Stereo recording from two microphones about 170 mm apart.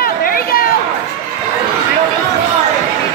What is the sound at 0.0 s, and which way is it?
Chatter, 60° left (ahead or behind).